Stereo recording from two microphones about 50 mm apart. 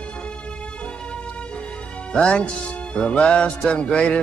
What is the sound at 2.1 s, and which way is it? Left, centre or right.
Speech, left.